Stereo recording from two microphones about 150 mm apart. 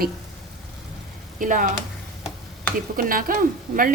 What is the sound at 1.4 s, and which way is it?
Speech, 65° right (ahead or behind).